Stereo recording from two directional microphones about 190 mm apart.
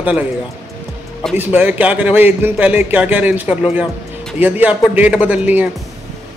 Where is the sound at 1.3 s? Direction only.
10° right (ahead or behind).